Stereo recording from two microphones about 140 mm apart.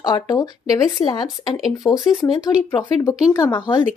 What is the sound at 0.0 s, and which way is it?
Speech, 30° left (ahead or behind).